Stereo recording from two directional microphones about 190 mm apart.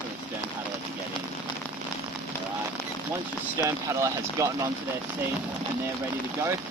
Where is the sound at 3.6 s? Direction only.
15° right (ahead or behind).